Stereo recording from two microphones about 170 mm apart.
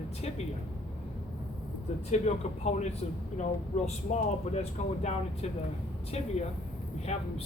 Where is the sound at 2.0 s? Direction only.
40° left (ahead or behind).